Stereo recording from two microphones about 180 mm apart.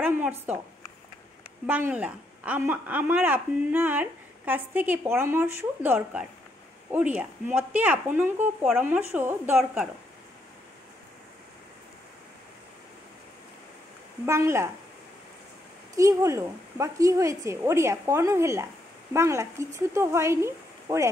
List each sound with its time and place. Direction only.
0.0 s a woman's voice: 10° right (ahead or behind)
1.7 s a woman's voice: 10° right (ahead or behind)
14.2 s a woman's voice: 15° right (ahead or behind)
16.0 s a woman's voice: 15° right (ahead or behind)